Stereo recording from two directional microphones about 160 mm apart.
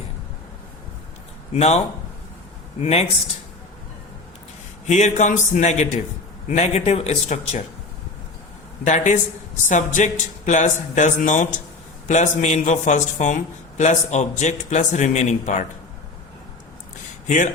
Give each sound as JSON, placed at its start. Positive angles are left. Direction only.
{"t": 1.5, "sound": "a man's voice", "side_deg": 40}
{"t": 2.8, "sound": "speech", "side_deg": 40}
{"t": 4.9, "sound": "a man's voice", "side_deg": 50}
{"t": 8.8, "sound": "a man's voice", "side_deg": 50}
{"t": 17.2, "sound": "speech", "side_deg": 55}